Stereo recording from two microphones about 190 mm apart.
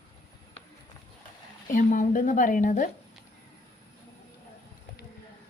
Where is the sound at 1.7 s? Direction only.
45° left (ahead or behind).